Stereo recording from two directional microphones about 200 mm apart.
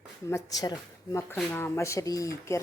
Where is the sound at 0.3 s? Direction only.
15° left (ahead or behind).